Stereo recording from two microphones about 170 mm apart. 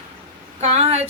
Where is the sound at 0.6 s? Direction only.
40° right (ahead or behind).